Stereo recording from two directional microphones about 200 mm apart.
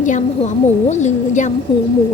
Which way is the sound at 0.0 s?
40° left (ahead or behind).